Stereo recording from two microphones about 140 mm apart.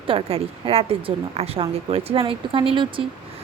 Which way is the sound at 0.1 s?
40° right (ahead or behind).